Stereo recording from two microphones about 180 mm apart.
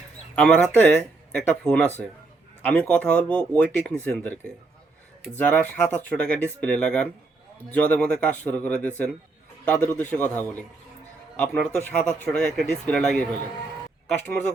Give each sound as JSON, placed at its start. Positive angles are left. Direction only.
{"t": 0.3, "sound": "speech", "side_deg": 5}
{"t": 5.4, "sound": "speech", "side_deg": 5}